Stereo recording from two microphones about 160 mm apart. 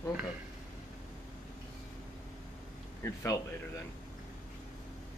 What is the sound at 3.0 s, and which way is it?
Speech, 20° left (ahead or behind).